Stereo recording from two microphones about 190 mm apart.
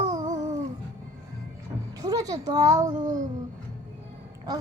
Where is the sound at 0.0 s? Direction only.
20° right (ahead or behind).